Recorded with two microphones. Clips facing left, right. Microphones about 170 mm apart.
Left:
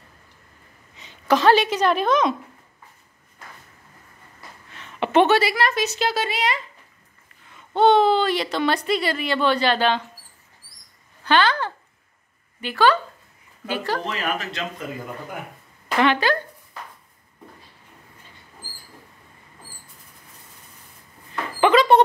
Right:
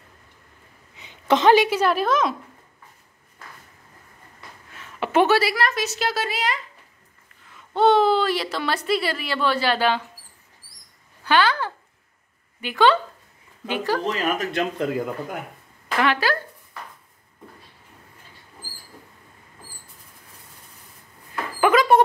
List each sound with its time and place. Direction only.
1.2 s a sound: 25° right (ahead or behind)
1.5 s a woman's voice: 10° right (ahead or behind)
4.7 s a woman's voice: 5° right (ahead or behind)
7.7 s a woman's voice: centre (ahead or behind)
11.2 s speech: 10° right (ahead or behind)
12.6 s speech: 20° right (ahead or behind)
14.0 s speech: 50° right (ahead or behind)
16.0 s a woman's voice: 5° right (ahead or behind)
21.5 s a sound: 10° right (ahead or behind)